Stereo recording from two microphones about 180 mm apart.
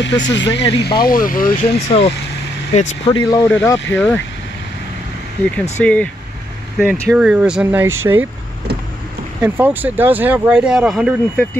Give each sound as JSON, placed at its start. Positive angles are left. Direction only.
{"t": 0.0, "sound": "speech", "side_deg": 80}
{"t": 2.7, "sound": "speech", "side_deg": 40}
{"t": 3.1, "sound": "speech", "side_deg": 25}
{"t": 5.4, "sound": "speech", "side_deg": 10}
{"t": 6.8, "sound": "speech", "side_deg": -5}
{"t": 9.4, "sound": "speech", "side_deg": -10}